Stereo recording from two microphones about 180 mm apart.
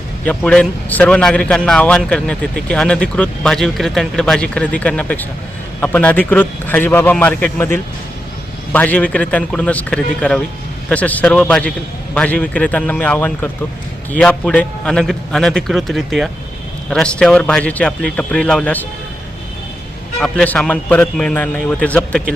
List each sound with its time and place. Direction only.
0.3 s a man's voice: 5° left (ahead or behind)
20.1 s speech: 5° left (ahead or behind)